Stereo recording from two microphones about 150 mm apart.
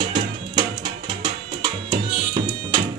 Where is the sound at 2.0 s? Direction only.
30° right (ahead or behind).